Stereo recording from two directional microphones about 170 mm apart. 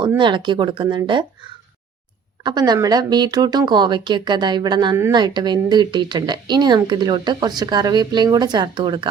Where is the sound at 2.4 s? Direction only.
25° right (ahead or behind).